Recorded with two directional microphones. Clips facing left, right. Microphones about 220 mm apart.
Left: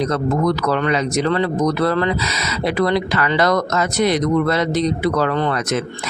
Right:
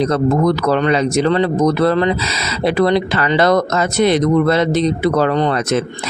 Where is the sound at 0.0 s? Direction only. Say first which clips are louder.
Right 4 dB; 30° right (ahead or behind).